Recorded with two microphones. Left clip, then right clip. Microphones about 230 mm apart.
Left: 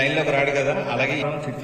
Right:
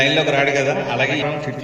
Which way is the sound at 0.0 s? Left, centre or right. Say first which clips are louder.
Right 4 dB; right.